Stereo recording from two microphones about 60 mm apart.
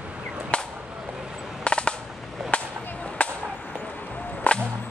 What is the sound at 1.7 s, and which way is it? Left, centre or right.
Machine gun, centre.